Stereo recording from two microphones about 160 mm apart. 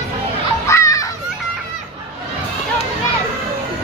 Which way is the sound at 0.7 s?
20° left (ahead or behind).